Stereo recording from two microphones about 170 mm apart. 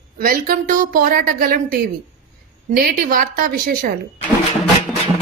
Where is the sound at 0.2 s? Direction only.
55° right (ahead or behind).